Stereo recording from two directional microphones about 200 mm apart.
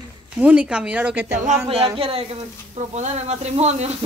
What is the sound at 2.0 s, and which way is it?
Speech, 30° right (ahead or behind).